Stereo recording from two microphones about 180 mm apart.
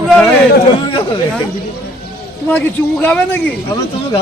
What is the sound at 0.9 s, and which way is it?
Speech, 30° left (ahead or behind).